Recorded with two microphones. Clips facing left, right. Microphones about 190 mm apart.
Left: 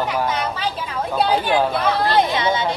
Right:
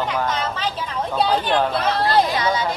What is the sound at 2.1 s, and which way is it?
Speech, 25° left (ahead or behind).